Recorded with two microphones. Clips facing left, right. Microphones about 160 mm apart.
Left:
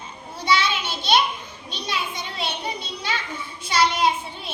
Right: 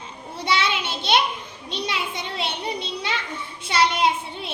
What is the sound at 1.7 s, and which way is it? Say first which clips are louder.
Speech: right 1 dB; 25° right (ahead or behind).